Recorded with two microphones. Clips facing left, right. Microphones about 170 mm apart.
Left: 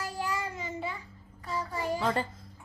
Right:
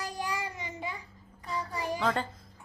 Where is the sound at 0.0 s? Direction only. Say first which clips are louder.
Left 1 dB; 15° right (ahead or behind).